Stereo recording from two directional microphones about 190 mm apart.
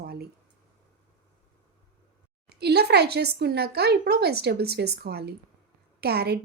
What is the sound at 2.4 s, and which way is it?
Speech, 60° right (ahead or behind).